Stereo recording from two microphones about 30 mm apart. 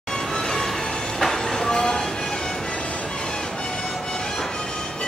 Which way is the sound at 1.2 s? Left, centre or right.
Centre.